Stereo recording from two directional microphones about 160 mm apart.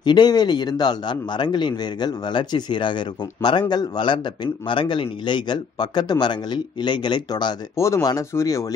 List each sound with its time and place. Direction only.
0.0 s a man's voice: 25° left (ahead or behind)